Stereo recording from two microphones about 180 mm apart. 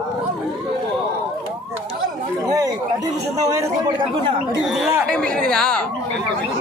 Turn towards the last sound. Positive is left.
turn(degrees=5)  # may be behind; listen again after turning